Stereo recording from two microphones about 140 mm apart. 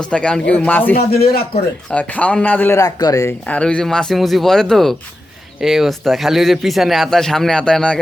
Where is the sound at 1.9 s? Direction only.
10° left (ahead or behind).